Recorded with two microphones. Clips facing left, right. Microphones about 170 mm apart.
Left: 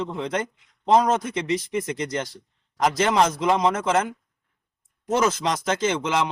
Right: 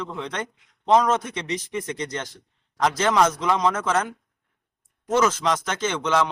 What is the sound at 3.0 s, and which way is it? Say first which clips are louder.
Speech: even; 30° left (ahead or behind).